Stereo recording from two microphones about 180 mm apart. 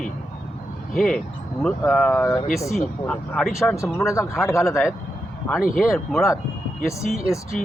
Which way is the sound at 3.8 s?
15° left (ahead or behind).